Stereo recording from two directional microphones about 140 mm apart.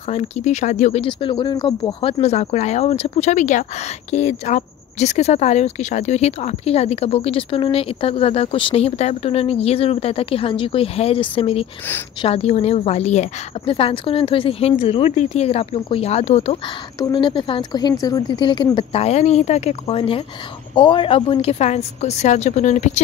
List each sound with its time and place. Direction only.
0.1 s speech: 55° left (ahead or behind)
1.0 s speech: 35° left (ahead or behind)
17.0 s speech: 35° left (ahead or behind); by 23.0 s 55° left (ahead or behind)